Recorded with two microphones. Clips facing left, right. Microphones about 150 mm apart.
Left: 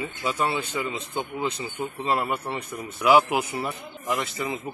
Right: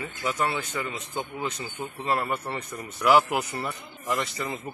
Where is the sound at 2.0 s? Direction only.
15° left (ahead or behind).